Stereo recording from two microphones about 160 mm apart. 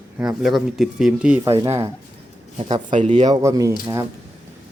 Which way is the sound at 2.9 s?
45° right (ahead or behind).